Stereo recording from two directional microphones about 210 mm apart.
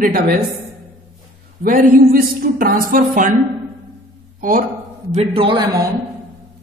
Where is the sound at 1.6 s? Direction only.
45° right (ahead or behind).